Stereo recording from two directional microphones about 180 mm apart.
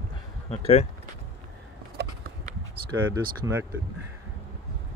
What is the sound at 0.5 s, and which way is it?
Speech, 35° left (ahead or behind).